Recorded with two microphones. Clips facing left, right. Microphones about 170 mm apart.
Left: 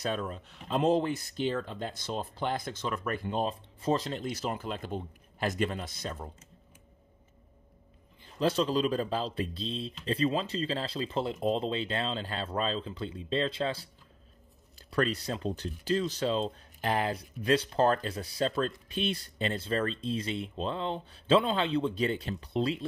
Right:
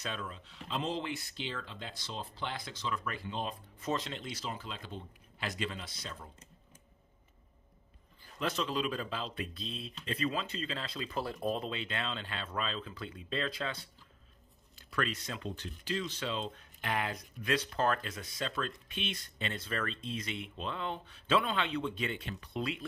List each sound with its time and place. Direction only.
0.0 s speech: 45° left (ahead or behind)
3.4 s speech: 35° left (ahead or behind)
8.2 s speech: 30° left (ahead or behind)